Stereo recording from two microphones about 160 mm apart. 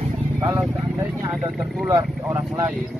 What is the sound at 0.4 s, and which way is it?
Vehicle, 15° right (ahead or behind).